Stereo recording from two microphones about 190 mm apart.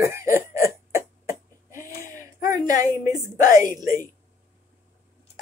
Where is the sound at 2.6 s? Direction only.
45° left (ahead or behind).